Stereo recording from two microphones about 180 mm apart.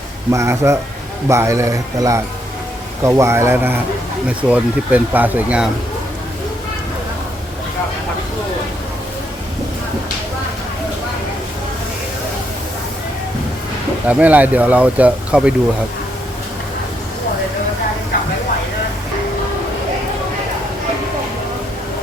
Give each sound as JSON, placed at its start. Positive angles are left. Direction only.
{"t": 0.3, "sound": "speech", "side_deg": -15}
{"t": 14.1, "sound": "speech", "side_deg": -10}